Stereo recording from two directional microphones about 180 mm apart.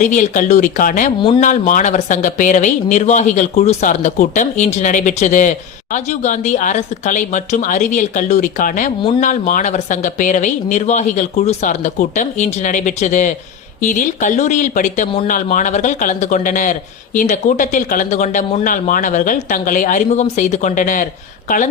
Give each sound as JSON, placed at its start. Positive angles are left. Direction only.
{"t": 0.0, "sound": "speech", "side_deg": 45}